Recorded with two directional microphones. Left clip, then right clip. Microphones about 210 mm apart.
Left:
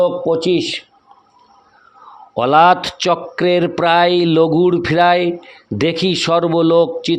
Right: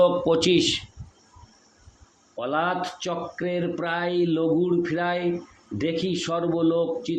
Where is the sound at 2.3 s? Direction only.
55° left (ahead or behind).